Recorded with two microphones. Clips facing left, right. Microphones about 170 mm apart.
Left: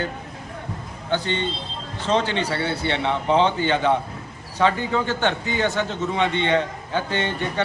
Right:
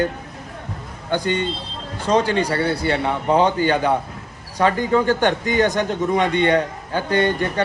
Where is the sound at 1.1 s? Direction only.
10° right (ahead or behind).